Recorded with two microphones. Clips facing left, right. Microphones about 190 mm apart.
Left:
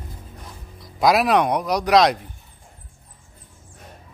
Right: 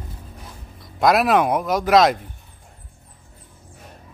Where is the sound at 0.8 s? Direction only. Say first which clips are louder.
Right 1 dB; centre (ahead or behind).